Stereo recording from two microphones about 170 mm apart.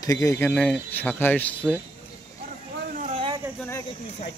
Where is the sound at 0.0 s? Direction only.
20° left (ahead or behind).